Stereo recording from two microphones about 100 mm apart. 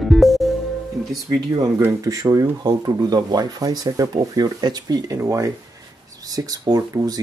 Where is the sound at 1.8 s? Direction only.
35° right (ahead or behind).